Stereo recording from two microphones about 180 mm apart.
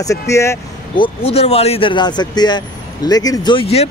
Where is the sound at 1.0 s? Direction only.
35° left (ahead or behind).